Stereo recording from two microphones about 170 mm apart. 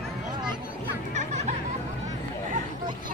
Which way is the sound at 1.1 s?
40° right (ahead or behind).